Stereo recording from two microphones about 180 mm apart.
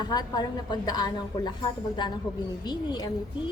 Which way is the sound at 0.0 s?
20° left (ahead or behind).